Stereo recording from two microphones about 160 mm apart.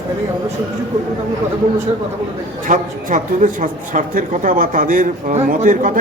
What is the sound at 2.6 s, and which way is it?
A man's voice, 55° right (ahead or behind).